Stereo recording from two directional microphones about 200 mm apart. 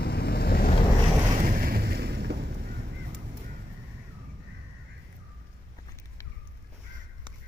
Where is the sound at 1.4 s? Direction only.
45° right (ahead or behind).